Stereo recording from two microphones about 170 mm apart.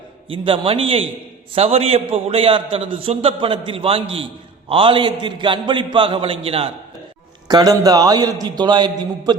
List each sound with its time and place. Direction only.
0.3 s a man's voice: 30° right (ahead or behind)